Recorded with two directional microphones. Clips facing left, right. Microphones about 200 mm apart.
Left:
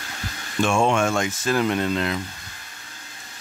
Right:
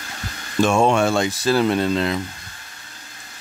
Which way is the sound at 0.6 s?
40° right (ahead or behind).